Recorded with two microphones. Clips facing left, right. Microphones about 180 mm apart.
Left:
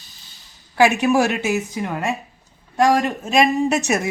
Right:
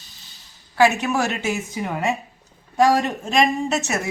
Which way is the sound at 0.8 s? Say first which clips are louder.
Left 3 dB; 15° left (ahead or behind).